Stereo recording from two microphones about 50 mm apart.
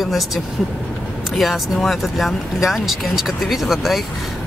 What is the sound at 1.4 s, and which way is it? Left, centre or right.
Speech, centre.